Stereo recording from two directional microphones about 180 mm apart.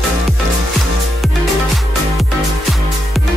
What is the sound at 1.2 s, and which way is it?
Music, centre (ahead or behind).